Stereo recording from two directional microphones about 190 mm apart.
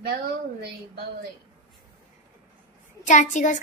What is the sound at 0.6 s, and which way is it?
Speech, 55° right (ahead or behind).